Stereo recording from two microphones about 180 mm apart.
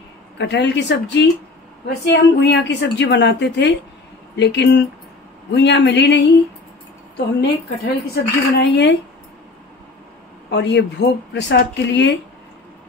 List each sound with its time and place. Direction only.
0.4 s a woman's voice: 75° left (ahead or behind)
10.5 s speech: 70° left (ahead or behind)